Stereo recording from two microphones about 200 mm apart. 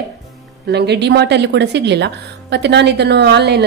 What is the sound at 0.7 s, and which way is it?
A woman's voice, 55° right (ahead or behind).